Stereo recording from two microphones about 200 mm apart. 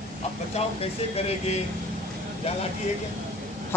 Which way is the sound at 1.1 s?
30° left (ahead or behind).